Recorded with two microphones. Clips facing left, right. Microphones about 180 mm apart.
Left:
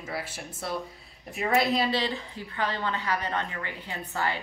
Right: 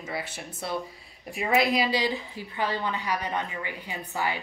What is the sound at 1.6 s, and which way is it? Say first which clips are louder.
A woman's voice: right 1 dB; 15° right (ahead or behind).